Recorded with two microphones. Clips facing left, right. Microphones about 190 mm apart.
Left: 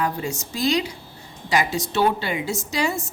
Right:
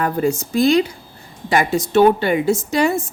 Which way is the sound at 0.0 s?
55° right (ahead or behind).